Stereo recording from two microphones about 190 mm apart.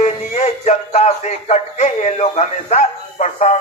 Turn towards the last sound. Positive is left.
turn(degrees=40)  # may be behind; listen again after turning